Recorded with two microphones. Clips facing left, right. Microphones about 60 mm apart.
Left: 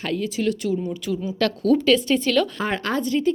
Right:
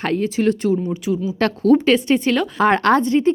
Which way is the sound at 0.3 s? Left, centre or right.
Right.